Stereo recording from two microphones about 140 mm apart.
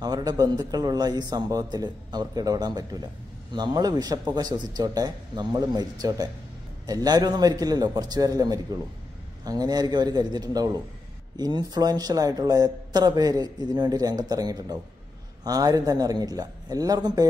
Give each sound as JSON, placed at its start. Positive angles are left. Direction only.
{"t": 0.0, "sound": "speech", "side_deg": -30}